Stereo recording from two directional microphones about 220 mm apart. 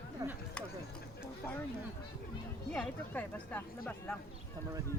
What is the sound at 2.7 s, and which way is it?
Speech, 5° left (ahead or behind).